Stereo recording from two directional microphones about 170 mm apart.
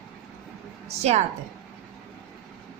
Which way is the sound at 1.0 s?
40° right (ahead or behind).